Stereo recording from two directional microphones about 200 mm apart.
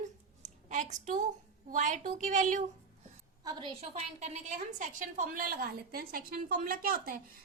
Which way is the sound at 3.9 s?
35° right (ahead or behind).